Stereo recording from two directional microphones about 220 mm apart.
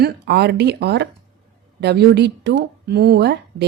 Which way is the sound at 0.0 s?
50° right (ahead or behind).